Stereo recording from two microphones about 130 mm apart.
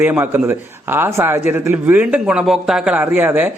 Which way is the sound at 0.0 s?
15° right (ahead or behind).